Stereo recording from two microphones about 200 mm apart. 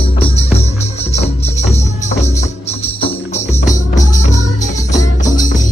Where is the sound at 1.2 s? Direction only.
35° left (ahead or behind).